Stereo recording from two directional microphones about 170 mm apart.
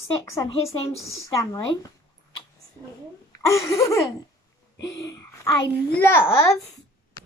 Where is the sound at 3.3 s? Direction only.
15° left (ahead or behind).